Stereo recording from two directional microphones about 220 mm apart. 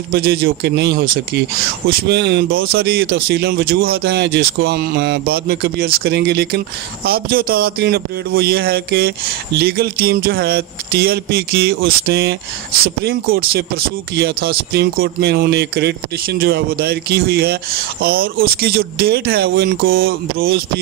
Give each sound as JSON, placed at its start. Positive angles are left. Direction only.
{"t": 0.1, "sound": "a man's voice", "side_deg": -45}